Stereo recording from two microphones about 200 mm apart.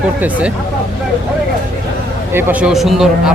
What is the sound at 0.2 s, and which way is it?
Speech, 5° right (ahead or behind).